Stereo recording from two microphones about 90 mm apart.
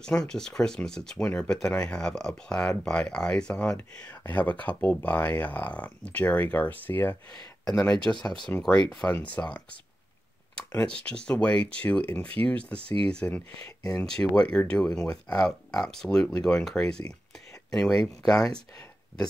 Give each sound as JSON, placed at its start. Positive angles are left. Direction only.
{"t": 0.0, "sound": "speech", "side_deg": 10}
{"t": 7.6, "sound": "speech", "side_deg": 10}
{"t": 11.1, "sound": "speech", "side_deg": 10}
{"t": 12.7, "sound": "speech", "side_deg": -90}
{"t": 13.0, "sound": "speech", "side_deg": 10}